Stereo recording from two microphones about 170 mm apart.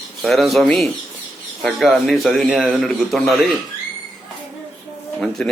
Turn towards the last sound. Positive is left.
turn(degrees=5)  # may be behind; listen again after turning